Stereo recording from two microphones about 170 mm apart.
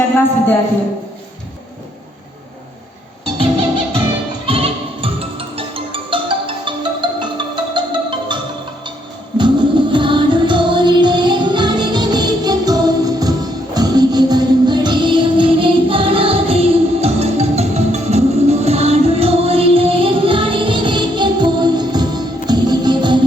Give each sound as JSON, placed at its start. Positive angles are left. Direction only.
{"t": 0.1, "sound": "speech", "side_deg": 10}
{"t": 4.4, "sound": "music", "side_deg": -35}
{"t": 9.4, "sound": "music", "side_deg": -30}